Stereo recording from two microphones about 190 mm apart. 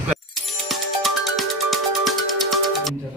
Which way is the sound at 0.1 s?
Centre (ahead or behind).